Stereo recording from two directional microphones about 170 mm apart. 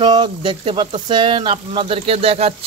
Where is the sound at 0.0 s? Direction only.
25° right (ahead or behind).